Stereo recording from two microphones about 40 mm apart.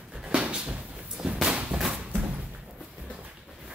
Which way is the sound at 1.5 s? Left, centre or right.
Right.